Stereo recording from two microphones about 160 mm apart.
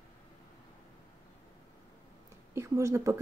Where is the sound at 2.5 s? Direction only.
20° right (ahead or behind).